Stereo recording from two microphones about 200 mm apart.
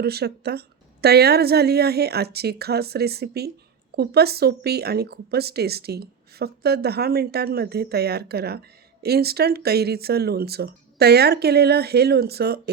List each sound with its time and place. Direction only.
0.0 s speech: 55° right (ahead or behind)